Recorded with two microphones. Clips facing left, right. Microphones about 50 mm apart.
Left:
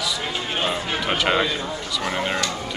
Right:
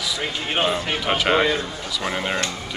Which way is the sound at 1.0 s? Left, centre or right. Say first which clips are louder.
Right 1 dB; centre.